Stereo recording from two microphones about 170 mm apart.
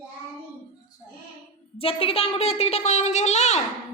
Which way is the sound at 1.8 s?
35° left (ahead or behind).